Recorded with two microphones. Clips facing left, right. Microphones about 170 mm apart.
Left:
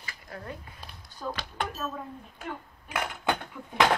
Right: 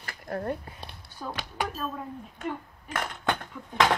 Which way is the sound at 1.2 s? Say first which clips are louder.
Right 1 dB; centre (ahead or behind).